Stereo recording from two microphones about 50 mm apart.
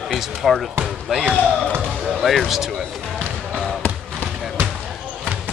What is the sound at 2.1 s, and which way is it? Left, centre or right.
Speech, centre.